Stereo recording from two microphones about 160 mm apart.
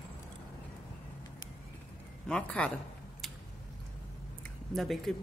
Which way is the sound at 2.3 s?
5° left (ahead or behind).